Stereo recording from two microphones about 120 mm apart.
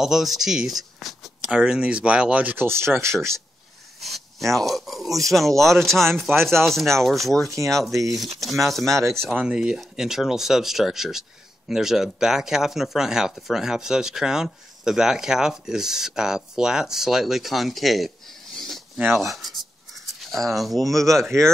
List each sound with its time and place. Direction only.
0.0 s speech: centre (ahead or behind); by 3.2 s 20° right (ahead or behind)
4.0 s speech: centre (ahead or behind)
7.5 s speech: 25° right (ahead or behind)
8.4 s speech: centre (ahead or behind)
8.9 s speech: 25° right (ahead or behind)
9.4 s speech: 5° right (ahead or behind)